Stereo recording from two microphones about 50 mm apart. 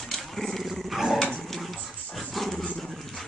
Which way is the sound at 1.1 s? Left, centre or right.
Left.